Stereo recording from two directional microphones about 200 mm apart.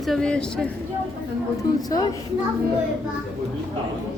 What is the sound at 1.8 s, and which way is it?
Speech, 20° left (ahead or behind).